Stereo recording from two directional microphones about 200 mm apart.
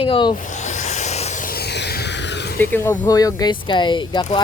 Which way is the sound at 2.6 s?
10° left (ahead or behind).